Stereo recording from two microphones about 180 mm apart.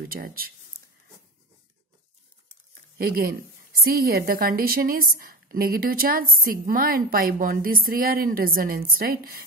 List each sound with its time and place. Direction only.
0.1 s a woman's voice: 55° right (ahead or behind)
3.0 s a woman's voice: 55° right (ahead or behind)